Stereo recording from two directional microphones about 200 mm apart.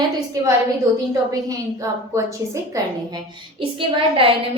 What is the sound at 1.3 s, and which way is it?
A woman's voice, 15° right (ahead or behind).